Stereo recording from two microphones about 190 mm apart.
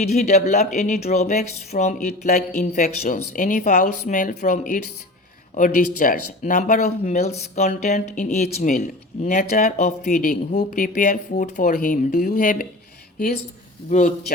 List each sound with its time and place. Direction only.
0.0 s speech: 35° left (ahead or behind)